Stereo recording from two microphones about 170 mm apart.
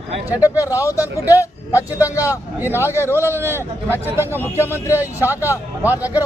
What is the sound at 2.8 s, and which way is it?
Speech, 15° left (ahead or behind).